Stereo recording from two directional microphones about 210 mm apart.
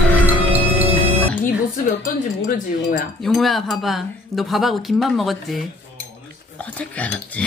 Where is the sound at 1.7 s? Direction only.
40° left (ahead or behind).